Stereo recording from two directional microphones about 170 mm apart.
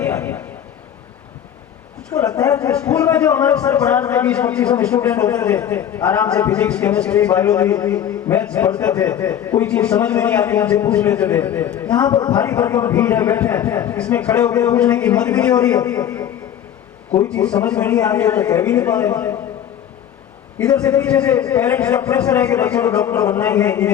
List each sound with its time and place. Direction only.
0.0 s a sound: 10° left (ahead or behind)
2.0 s a man's voice: 10° left (ahead or behind)
16.0 s a man's voice: 20° left (ahead or behind)
17.2 s a man's voice: 5° left (ahead or behind)
20.6 s a man's voice: 10° left (ahead or behind)